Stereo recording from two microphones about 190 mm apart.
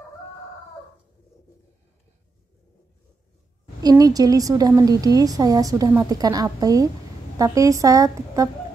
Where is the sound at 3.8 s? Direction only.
20° right (ahead or behind).